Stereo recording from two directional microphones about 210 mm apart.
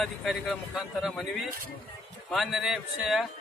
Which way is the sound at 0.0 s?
Centre (ahead or behind).